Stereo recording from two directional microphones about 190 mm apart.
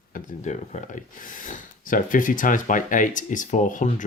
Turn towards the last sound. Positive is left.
turn(degrees=40)  # may be behind; listen again after turning